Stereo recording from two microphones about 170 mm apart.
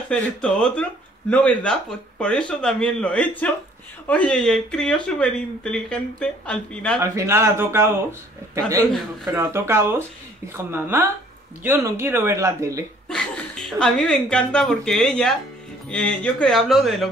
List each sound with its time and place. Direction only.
0.1 s speech: 5° left (ahead or behind)
7.0 s speech: 15° right (ahead or behind)
9.3 s speech: 15° right (ahead or behind)
13.1 s speech: 5° left (ahead or behind)